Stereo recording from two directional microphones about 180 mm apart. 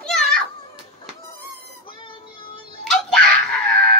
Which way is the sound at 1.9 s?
30° left (ahead or behind).